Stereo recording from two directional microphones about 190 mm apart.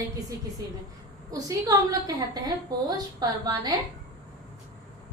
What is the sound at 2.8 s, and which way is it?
Speech, 20° right (ahead or behind).